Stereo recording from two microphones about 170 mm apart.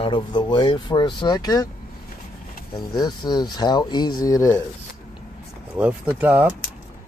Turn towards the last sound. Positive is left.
turn(degrees=-10)  # may be behind; listen again after turning